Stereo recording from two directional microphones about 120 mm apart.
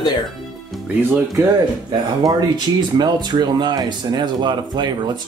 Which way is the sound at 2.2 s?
35° right (ahead or behind).